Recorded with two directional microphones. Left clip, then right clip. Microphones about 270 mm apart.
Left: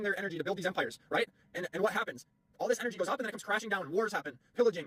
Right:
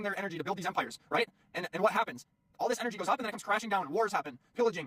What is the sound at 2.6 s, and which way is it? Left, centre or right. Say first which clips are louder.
Speech: right 1 dB; centre.